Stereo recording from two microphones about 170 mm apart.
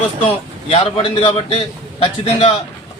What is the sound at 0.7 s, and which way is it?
Speech, 35° left (ahead or behind).